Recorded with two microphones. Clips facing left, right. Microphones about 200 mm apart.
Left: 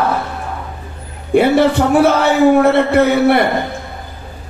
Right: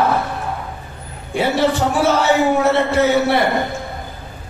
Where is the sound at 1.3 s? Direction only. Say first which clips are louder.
Left 6 dB; 55° left (ahead or behind).